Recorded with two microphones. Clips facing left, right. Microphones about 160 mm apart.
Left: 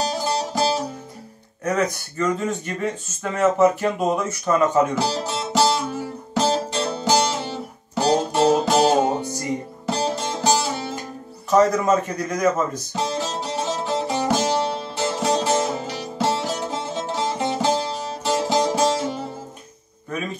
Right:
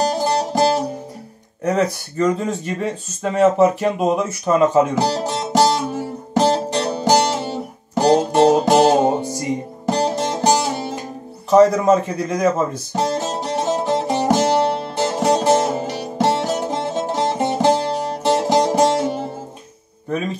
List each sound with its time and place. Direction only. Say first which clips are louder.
0.2 s music: right 5 dB; 50° right (ahead or behind)
1.6 s speech: right 3 dB; 30° right (ahead or behind)
5.0 s speech: right 4 dB; 50° right (ahead or behind)
6.3 s music: right 4 dB; 45° right (ahead or behind)
11.5 s speech: right 5 dB; 30° right (ahead or behind)
12.9 s music: right 5 dB; 50° right (ahead or behind)